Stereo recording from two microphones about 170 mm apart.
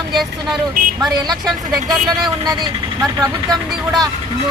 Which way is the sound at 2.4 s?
20° right (ahead or behind).